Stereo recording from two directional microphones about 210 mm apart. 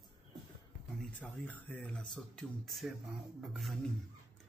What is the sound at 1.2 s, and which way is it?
Speech, 5° left (ahead or behind).